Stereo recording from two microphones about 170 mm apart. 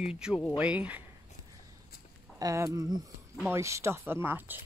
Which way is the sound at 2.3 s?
20° right (ahead or behind).